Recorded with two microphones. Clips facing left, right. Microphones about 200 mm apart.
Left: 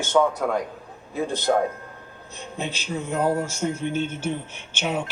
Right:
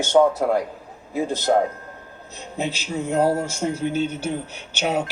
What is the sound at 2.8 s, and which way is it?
Speech, 35° right (ahead or behind).